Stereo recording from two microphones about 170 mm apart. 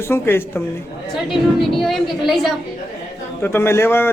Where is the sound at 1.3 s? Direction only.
Centre (ahead or behind).